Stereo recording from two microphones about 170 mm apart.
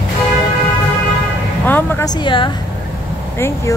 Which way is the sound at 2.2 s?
30° left (ahead or behind).